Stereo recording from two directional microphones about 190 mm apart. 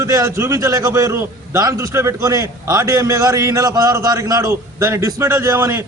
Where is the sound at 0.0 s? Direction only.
15° right (ahead or behind).